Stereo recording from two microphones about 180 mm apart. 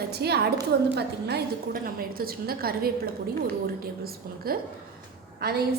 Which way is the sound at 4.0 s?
55° right (ahead or behind).